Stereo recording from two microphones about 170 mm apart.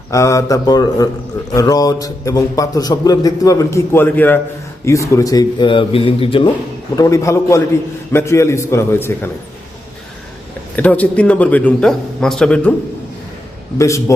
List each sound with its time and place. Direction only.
0.1 s a man's voice: 20° left (ahead or behind)
6.9 s a man's voice: 20° left (ahead or behind)
10.8 s a man's voice: 10° left (ahead or behind)
13.7 s a man's voice: 15° left (ahead or behind)